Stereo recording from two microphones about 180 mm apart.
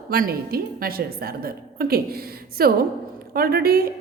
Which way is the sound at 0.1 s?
55° right (ahead or behind).